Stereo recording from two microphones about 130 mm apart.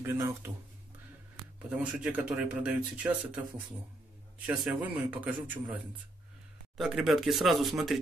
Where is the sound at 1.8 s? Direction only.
10° right (ahead or behind).